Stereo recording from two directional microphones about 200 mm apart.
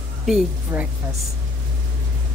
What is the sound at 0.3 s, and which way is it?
Speech, 5° right (ahead or behind).